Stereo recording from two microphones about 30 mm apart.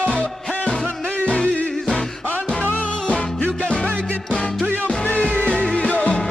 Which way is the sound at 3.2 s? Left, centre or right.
Left.